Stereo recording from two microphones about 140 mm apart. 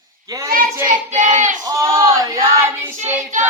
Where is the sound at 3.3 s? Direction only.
60° right (ahead or behind).